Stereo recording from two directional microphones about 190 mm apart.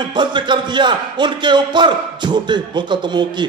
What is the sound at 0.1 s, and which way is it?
A man's voice, 25° right (ahead or behind).